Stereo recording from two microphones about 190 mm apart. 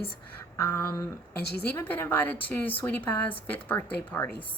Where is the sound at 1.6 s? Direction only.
10° left (ahead or behind).